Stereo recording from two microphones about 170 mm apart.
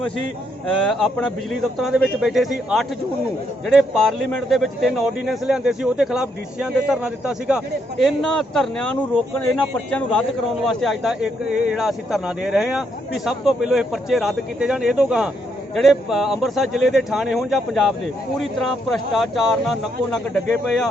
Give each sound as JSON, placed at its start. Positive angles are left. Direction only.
{"t": 0.9, "sound": "a man's voice", "side_deg": 5}